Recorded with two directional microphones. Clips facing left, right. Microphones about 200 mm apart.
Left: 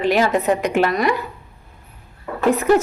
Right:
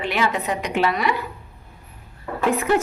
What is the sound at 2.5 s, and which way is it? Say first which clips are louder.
Speech: left 5 dB; 40° left (ahead or behind).